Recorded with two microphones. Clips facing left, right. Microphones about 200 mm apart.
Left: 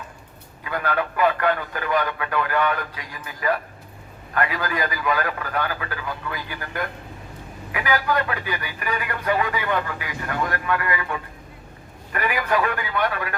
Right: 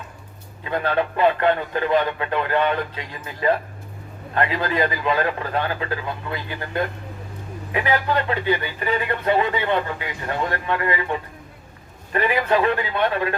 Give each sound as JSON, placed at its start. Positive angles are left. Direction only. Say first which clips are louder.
{"t": 0.6, "sound": "speech", "louder": "right 3 dB", "side_deg": -25}